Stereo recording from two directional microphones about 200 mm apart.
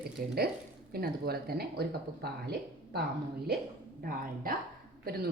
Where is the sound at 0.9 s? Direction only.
50° right (ahead or behind).